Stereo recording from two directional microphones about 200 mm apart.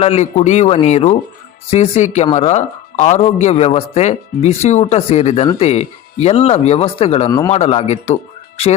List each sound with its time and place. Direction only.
0.0 s speech: 30° left (ahead or behind)
7.3 s speech: 15° left (ahead or behind)
7.5 s a man's voice: 30° left (ahead or behind)